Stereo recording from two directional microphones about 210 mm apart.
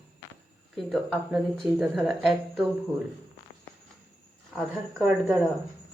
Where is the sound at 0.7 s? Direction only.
Centre (ahead or behind).